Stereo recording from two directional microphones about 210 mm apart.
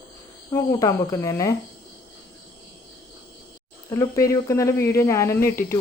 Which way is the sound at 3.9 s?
15° left (ahead or behind).